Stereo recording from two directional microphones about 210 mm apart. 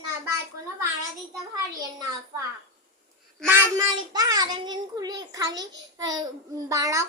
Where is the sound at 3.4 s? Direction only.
15° right (ahead or behind).